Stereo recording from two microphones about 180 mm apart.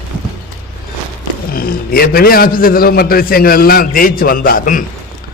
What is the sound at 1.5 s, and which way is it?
A man's voice, 55° left (ahead or behind).